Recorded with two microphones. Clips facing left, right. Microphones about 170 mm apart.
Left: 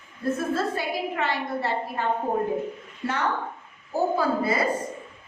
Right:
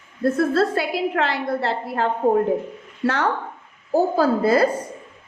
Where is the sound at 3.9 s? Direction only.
75° right (ahead or behind).